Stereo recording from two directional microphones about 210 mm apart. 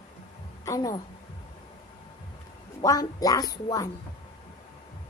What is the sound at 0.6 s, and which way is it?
Speech, 15° left (ahead or behind).